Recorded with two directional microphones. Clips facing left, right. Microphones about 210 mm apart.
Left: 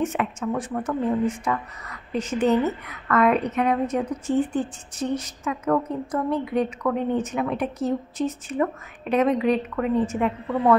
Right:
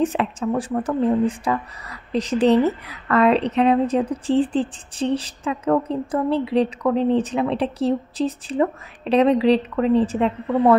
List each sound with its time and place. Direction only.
0.0 s speech: 35° right (ahead or behind)